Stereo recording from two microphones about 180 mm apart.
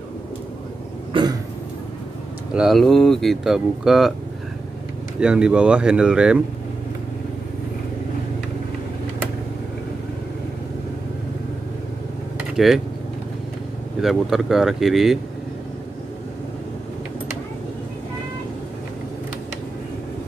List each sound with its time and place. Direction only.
1.1 s cough: 25° right (ahead or behind)
2.5 s speech: centre (ahead or behind)
5.2 s speech: 5° right (ahead or behind)
12.5 s speech: centre (ahead or behind)
14.0 s speech: centre (ahead or behind)